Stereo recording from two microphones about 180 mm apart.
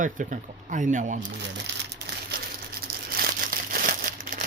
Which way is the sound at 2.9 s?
55° right (ahead or behind).